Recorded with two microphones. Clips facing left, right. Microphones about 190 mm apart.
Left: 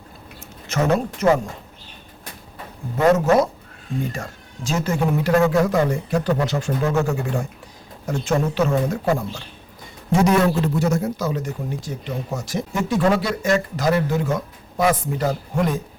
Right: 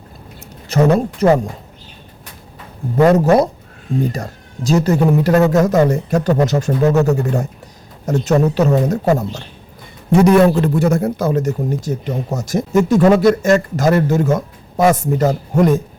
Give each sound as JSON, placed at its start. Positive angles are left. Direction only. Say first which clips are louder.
{"t": 0.7, "sound": "speech", "louder": "right 6 dB", "side_deg": -35}
{"t": 3.2, "sound": "speech", "louder": "right 5 dB", "side_deg": -35}
{"t": 10.1, "sound": "a man's voice", "louder": "right 7 dB", "side_deg": -55}